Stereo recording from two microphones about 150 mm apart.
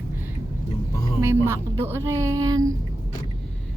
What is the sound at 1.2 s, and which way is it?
Speech, 15° right (ahead or behind).